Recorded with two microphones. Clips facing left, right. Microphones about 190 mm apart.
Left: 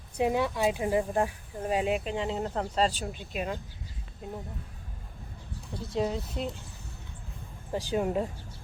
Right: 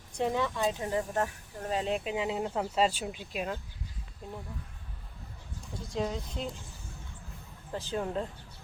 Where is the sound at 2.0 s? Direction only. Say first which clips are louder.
Left 1 dB; 5° right (ahead or behind).